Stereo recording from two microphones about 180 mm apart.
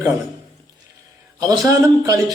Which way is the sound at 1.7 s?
20° right (ahead or behind).